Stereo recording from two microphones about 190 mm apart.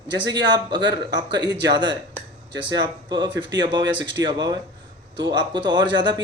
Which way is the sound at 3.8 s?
70° right (ahead or behind).